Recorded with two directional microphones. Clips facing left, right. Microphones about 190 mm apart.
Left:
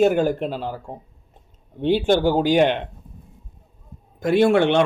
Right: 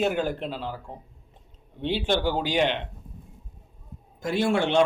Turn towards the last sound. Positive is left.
turn(degrees=60)  # may be behind; listen again after turning